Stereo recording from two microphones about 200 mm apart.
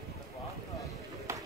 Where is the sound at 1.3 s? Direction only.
15° right (ahead or behind).